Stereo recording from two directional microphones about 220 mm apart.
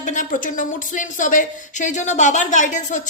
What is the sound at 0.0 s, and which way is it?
Speech, 35° left (ahead or behind).